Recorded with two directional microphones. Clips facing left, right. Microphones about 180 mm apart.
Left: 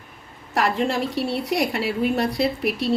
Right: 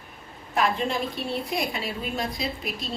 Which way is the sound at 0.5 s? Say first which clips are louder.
Left 3 dB; 75° left (ahead or behind).